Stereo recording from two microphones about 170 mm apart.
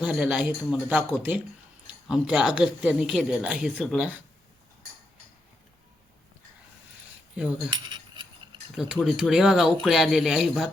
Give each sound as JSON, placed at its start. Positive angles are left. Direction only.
{"t": 0.0, "sound": "a woman's voice", "side_deg": -5}
{"t": 7.7, "sound": "cutlery", "side_deg": -25}
{"t": 8.7, "sound": "a woman's voice", "side_deg": -5}